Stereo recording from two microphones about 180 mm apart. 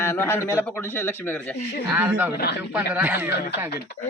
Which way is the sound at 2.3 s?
65° left (ahead or behind).